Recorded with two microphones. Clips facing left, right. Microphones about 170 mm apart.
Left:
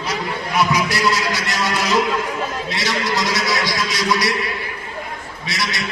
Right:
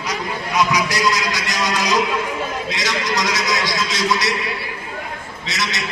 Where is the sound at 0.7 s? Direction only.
15° right (ahead or behind).